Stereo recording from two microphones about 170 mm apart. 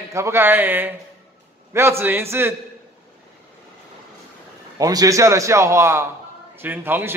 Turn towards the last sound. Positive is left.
turn(degrees=-10)  # may be behind; listen again after turning